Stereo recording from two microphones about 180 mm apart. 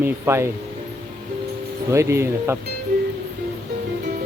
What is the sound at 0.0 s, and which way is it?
Speech, 15° right (ahead or behind).